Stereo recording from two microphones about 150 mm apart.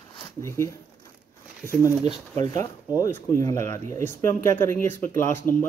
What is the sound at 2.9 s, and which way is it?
Speech, 20° left (ahead or behind).